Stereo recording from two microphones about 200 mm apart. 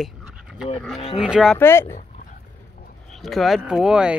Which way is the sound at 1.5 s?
10° left (ahead or behind).